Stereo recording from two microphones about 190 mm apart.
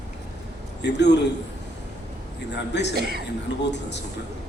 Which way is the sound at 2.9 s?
55° right (ahead or behind).